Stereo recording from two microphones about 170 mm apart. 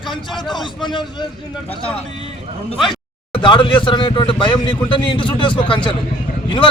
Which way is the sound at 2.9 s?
30° left (ahead or behind).